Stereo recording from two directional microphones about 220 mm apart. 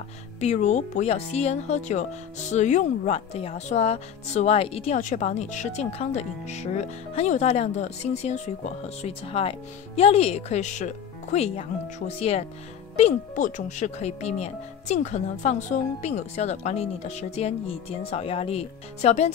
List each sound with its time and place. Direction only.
0.4 s speech: 30° left (ahead or behind)